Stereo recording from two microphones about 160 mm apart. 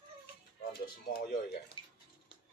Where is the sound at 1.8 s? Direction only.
30° left (ahead or behind).